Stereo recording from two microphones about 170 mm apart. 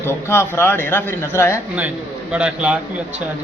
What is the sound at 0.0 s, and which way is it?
Speech, 15° left (ahead or behind).